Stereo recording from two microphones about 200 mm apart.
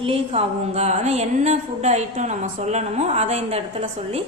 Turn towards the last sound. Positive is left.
turn(degrees=-30)  # may be behind; listen again after turning